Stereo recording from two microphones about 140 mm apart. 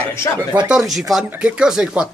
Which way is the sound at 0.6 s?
5° right (ahead or behind).